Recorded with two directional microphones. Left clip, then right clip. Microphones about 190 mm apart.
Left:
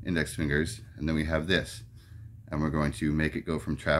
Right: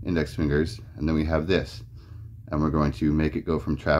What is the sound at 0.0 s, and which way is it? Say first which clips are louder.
Speech: right 4 dB; 15° left (ahead or behind).